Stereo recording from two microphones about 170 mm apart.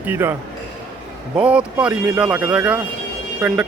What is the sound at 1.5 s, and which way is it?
Speech, 10° right (ahead or behind).